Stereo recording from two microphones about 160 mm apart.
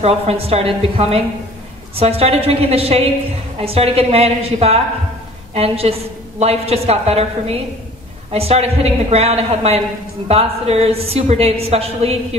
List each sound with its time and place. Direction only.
0.0 s a woman's voice: 40° right (ahead or behind)